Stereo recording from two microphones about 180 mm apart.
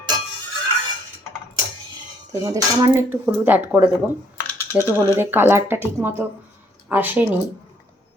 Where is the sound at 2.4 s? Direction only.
20° right (ahead or behind).